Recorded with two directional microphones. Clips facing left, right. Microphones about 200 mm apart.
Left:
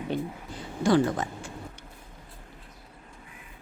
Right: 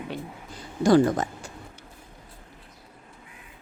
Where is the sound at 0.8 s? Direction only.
40° right (ahead or behind).